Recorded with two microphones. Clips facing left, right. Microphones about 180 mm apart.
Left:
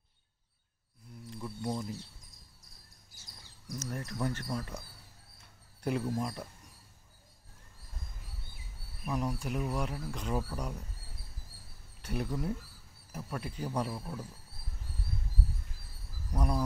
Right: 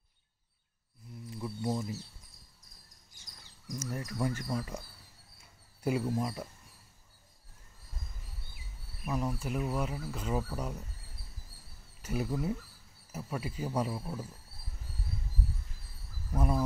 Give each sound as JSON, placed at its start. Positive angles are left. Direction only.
{"t": 1.3, "sound": "speech", "side_deg": -5}
{"t": 3.6, "sound": "speech", "side_deg": -10}
{"t": 5.4, "sound": "a sound", "side_deg": -5}
{"t": 9.0, "sound": "speech", "side_deg": 0}
{"t": 12.0, "sound": "speech", "side_deg": -5}
{"t": 16.3, "sound": "speech", "side_deg": -5}